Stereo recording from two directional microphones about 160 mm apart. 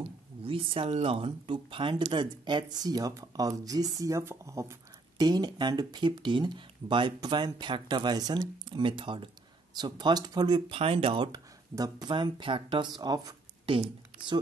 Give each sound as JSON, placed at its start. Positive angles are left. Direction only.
{"t": 0.4, "sound": "speech", "side_deg": -35}